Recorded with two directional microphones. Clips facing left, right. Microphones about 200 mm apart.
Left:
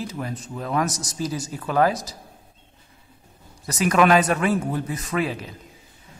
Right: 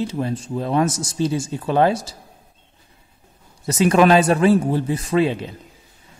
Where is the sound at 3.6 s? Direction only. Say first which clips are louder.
Right 4 dB; 25° right (ahead or behind).